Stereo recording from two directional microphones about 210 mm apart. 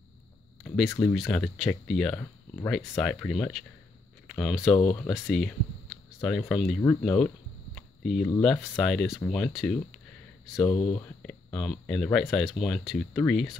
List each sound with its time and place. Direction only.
0.8 s speech: 5° left (ahead or behind)
4.3 s a sound: centre (ahead or behind)
5.1 s speech: centre (ahead or behind)
6.8 s speech: 10° left (ahead or behind)
7.2 s a sound: 5° left (ahead or behind)
8.4 s speech: centre (ahead or behind)
10.8 s speech: 25° left (ahead or behind)
11.2 s speech: 5° left (ahead or behind)